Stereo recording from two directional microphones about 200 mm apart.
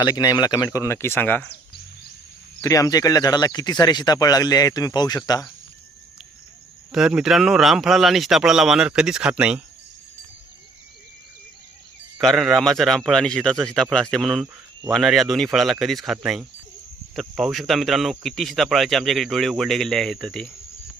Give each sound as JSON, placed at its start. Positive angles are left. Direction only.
{"t": 0.0, "sound": "speech", "side_deg": 20}
{"t": 2.6, "sound": "speech", "side_deg": 15}
{"t": 6.9, "sound": "speech", "side_deg": -5}
{"t": 12.1, "sound": "speech", "side_deg": 0}